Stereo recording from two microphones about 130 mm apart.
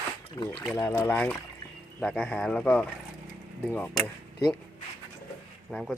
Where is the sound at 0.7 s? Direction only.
20° left (ahead or behind).